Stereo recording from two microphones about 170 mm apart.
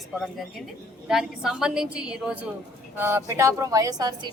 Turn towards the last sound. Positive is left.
turn(degrees=-25)  # may be behind; listen again after turning